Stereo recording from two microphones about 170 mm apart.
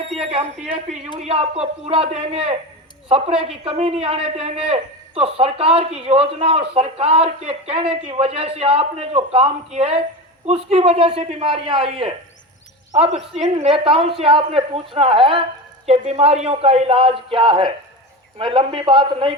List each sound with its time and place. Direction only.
0.2 s a man's voice: 35° right (ahead or behind)